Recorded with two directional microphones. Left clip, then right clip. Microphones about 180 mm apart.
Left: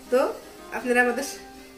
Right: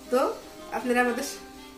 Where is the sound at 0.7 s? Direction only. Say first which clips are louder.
Left 3 dB; 15° right (ahead or behind).